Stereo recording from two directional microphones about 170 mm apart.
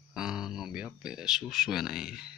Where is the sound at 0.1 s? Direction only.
5° right (ahead or behind).